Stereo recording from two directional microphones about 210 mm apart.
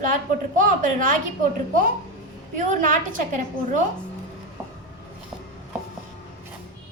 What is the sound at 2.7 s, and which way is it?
A woman's voice, 40° right (ahead or behind).